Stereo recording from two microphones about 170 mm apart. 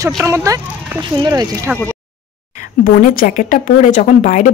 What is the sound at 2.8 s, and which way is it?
Speech, 50° left (ahead or behind).